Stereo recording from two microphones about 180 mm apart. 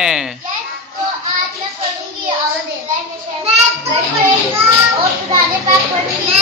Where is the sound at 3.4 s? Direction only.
35° right (ahead or behind).